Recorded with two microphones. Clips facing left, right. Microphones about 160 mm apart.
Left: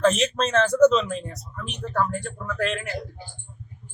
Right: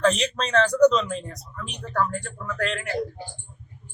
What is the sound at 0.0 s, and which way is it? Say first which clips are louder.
A woman's voice: left 2 dB; 5° left (ahead or behind).